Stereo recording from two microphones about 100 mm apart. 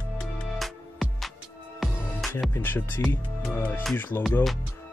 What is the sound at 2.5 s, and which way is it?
Music, 20° left (ahead or behind).